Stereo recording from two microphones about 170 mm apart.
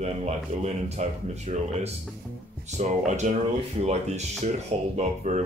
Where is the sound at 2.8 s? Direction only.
45° right (ahead or behind).